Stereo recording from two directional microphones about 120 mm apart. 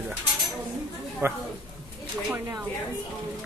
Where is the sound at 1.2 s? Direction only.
20° right (ahead or behind).